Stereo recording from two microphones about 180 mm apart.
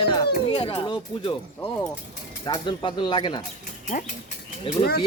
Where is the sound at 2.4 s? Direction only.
25° left (ahead or behind).